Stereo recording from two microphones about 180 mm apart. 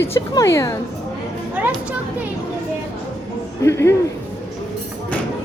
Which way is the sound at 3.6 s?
15° left (ahead or behind).